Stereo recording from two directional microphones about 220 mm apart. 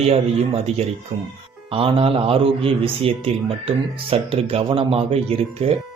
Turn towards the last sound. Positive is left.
turn(degrees=-25)  # may be behind; listen again after turning